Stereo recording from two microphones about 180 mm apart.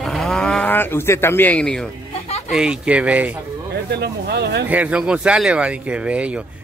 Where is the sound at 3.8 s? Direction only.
65° right (ahead or behind).